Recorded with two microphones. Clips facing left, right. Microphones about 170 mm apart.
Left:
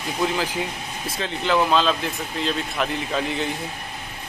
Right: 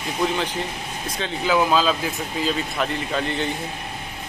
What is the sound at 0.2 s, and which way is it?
Speech, centre (ahead or behind).